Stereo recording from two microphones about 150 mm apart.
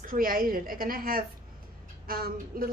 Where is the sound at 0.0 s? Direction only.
70° right (ahead or behind).